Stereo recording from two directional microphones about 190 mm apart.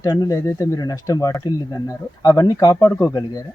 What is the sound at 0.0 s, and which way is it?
Speech, 20° left (ahead or behind).